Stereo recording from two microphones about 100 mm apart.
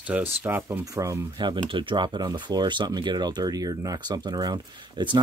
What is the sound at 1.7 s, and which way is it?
Speech, 55° right (ahead or behind).